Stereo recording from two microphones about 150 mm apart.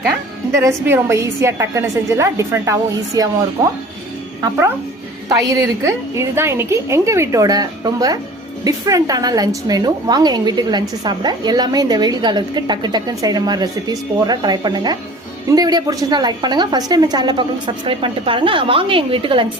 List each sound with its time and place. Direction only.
0.5 s a woman's voice: 20° right (ahead or behind)
5.3 s a woman's voice: 20° right (ahead or behind)